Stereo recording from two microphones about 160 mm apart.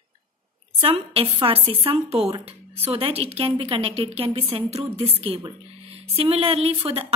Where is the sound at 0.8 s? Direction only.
35° right (ahead or behind).